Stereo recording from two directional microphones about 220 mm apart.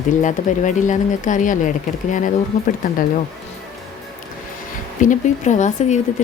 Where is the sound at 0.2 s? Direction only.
35° left (ahead or behind).